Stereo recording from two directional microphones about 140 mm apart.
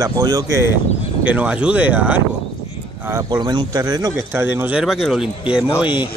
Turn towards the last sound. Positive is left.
turn(degrees=-10)  # may be behind; listen again after turning